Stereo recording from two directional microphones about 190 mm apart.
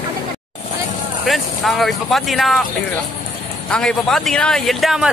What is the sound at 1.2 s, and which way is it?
Speech, centre (ahead or behind).